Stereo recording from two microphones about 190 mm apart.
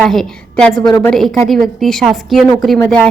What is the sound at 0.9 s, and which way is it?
Speech, 20° left (ahead or behind).